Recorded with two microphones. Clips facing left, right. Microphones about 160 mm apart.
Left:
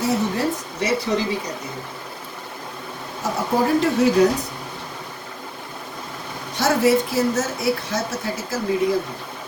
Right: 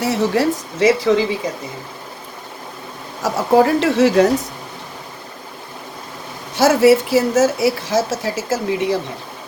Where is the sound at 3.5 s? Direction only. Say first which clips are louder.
Right 6 dB; 90° right.